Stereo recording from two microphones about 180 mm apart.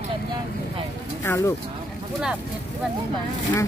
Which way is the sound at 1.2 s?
15° left (ahead or behind).